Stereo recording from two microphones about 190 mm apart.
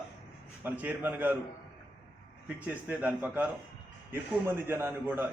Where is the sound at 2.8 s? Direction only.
5° right (ahead or behind).